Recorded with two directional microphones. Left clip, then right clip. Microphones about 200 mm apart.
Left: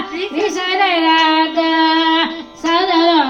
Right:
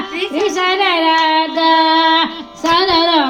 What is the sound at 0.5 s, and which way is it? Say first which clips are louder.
Child singing: right 1 dB; 10° right (ahead or behind).